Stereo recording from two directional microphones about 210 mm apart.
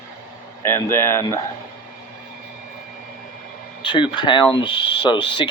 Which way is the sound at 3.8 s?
25° left (ahead or behind).